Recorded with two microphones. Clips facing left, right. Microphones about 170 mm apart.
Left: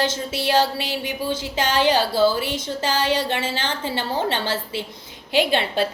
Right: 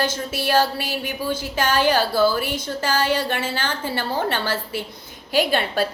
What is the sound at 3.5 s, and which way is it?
A woman's voice, 20° left (ahead or behind).